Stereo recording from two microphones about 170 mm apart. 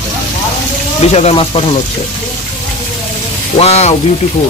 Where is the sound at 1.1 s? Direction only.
35° left (ahead or behind).